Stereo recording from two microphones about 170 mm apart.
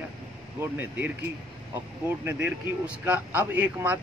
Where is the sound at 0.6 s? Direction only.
10° right (ahead or behind).